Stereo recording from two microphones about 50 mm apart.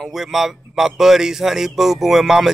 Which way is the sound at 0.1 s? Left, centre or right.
Centre.